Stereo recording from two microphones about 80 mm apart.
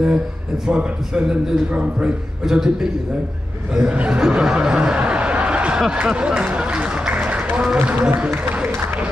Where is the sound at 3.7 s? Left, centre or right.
Centre.